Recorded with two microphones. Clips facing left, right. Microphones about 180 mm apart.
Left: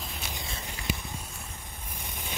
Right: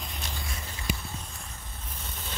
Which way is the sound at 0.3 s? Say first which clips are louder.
Left 1 dB; 15° left (ahead or behind).